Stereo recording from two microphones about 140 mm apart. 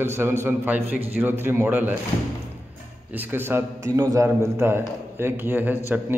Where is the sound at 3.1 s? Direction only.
15° right (ahead or behind).